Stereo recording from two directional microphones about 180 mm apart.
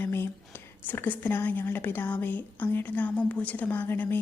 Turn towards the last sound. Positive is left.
turn(degrees=10)  # may be behind; listen again after turning